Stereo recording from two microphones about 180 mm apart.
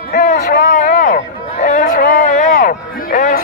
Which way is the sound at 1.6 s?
45° left (ahead or behind).